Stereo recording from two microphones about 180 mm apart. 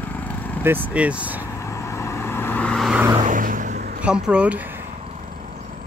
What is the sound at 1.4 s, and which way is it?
Vehicle, 15° left (ahead or behind).